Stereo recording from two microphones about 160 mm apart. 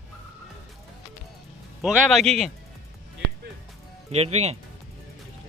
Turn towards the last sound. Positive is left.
turn(degrees=-40)  # may be behind; listen again after turning